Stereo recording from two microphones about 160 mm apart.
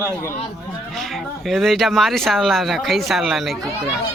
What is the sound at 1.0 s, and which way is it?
Speech, centre (ahead or behind).